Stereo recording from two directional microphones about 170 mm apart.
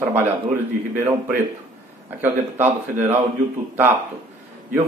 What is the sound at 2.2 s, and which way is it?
A man's voice, 10° right (ahead or behind).